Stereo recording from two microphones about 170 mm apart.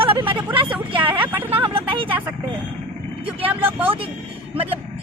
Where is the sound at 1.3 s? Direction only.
10° right (ahead or behind).